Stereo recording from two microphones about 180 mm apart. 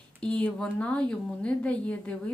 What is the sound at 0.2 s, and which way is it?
A woman's voice, 5° left (ahead or behind).